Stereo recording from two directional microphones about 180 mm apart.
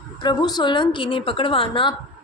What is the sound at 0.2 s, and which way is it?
A woman's voice, 25° left (ahead or behind).